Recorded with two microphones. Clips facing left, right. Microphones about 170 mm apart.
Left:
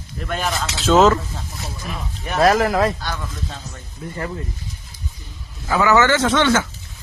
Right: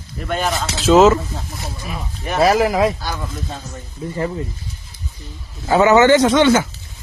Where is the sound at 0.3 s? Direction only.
Centre (ahead or behind).